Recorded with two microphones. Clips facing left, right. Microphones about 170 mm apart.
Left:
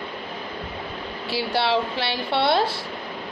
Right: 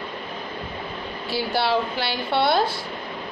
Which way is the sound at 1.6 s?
25° left (ahead or behind).